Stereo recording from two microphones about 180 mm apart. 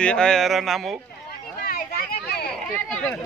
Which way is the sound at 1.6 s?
60° left (ahead or behind).